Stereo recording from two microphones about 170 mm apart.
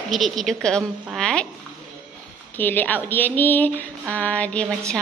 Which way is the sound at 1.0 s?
5° left (ahead or behind).